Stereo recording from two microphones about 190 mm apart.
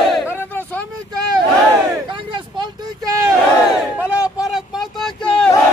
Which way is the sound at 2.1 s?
25° right (ahead or behind).